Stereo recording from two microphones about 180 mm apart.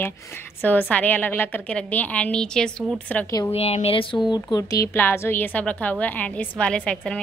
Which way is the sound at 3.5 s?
35° left (ahead or behind).